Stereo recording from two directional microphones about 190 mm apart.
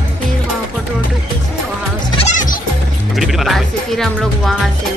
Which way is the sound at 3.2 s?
Centre (ahead or behind).